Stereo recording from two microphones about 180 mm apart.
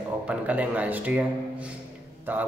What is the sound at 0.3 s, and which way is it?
Speech, 10° right (ahead or behind).